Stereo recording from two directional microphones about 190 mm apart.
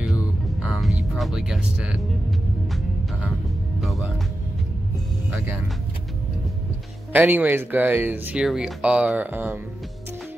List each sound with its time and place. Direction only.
0.6 s music: centre (ahead or behind)
3.8 s music: centre (ahead or behind)
7.1 s speech: 10° right (ahead or behind)